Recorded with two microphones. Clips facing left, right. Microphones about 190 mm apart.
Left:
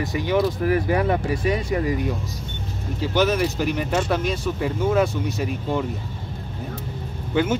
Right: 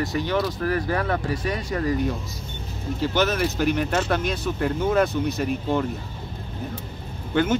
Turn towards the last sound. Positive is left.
turn(degrees=5)  # may be behind; listen again after turning